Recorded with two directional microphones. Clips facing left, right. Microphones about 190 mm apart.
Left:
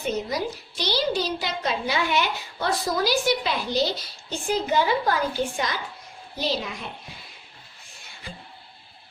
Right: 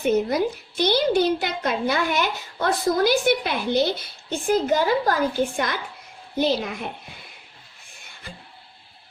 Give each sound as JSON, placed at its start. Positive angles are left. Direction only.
{"t": 0.0, "sound": "a woman's voice", "side_deg": -60}
{"t": 5.5, "sound": "a woman's voice", "side_deg": -55}